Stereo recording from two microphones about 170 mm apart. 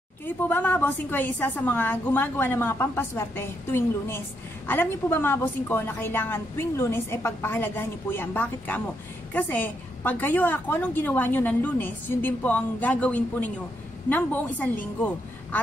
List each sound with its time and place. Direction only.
0.5 s a woman's voice: 10° left (ahead or behind)